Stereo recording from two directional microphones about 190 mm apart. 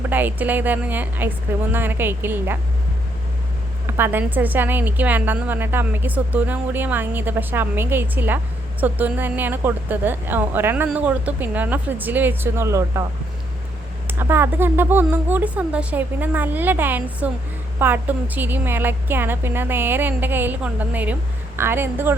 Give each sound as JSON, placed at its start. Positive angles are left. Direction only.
{"t": 0.1, "sound": "a woman's voice", "side_deg": -10}
{"t": 3.8, "sound": "a woman's voice", "side_deg": -10}
{"t": 14.1, "sound": "a woman's voice", "side_deg": -10}